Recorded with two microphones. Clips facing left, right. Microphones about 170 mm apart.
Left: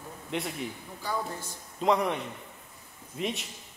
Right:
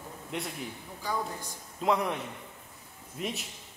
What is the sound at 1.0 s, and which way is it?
Speech, 15° right (ahead or behind).